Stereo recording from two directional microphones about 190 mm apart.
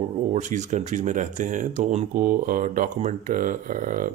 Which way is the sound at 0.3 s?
40° right (ahead or behind).